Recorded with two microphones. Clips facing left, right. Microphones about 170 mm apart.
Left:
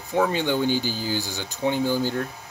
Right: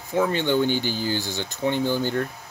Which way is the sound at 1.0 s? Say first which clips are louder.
Right 2 dB; 10° left (ahead or behind).